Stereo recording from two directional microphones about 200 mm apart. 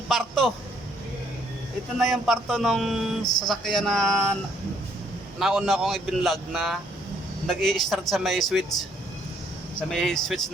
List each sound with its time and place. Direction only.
0.1 s speech: centre (ahead or behind)
2.0 s speech: centre (ahead or behind)
5.4 s speech: centre (ahead or behind)
9.9 s speech: centre (ahead or behind)